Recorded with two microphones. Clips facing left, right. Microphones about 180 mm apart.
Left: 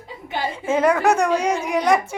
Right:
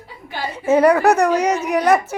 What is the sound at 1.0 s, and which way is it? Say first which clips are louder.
Speech: right 3 dB; 65° right (ahead or behind).